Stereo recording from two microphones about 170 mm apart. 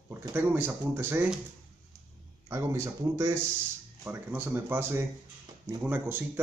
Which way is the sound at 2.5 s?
15° right (ahead or behind).